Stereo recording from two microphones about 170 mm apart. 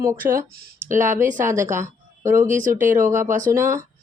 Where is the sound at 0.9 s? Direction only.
50° right (ahead or behind).